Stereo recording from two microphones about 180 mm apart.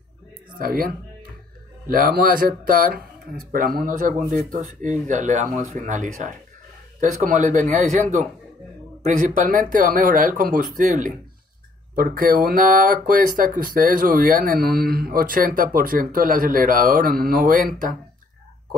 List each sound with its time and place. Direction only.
0.6 s a man's voice: 55° right (ahead or behind)